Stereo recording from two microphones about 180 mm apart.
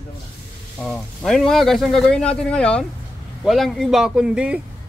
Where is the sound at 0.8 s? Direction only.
Centre (ahead or behind).